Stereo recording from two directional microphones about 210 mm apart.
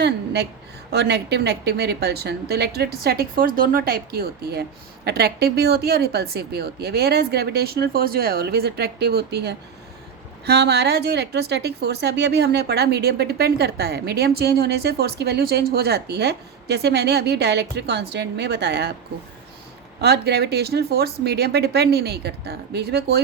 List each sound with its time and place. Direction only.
0.9 s speech: 55° right (ahead or behind)
20.0 s speech: 50° right (ahead or behind)